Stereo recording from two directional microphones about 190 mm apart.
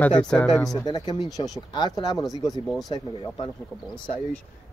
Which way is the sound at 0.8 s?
20° left (ahead or behind).